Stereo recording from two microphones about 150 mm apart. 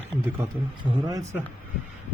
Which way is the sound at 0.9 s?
25° right (ahead or behind).